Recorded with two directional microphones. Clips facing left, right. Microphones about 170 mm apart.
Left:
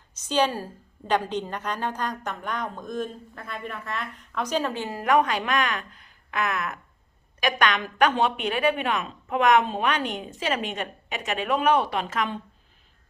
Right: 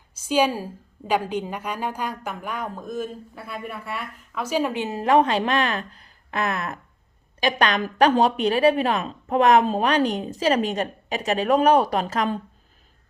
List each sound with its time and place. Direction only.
0.3 s a woman's voice: 10° right (ahead or behind); by 12.4 s 35° right (ahead or behind)